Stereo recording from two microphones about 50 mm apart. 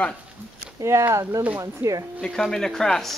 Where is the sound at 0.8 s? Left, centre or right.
Right.